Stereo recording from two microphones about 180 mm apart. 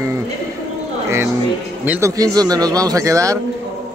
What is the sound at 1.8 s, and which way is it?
Speech, 10° right (ahead or behind).